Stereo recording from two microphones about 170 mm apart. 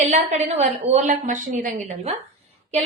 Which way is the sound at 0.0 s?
40° right (ahead or behind).